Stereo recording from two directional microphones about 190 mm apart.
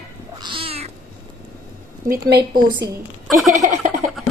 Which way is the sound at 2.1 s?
60° right (ahead or behind).